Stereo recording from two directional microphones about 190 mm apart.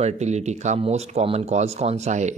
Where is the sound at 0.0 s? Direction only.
35° right (ahead or behind).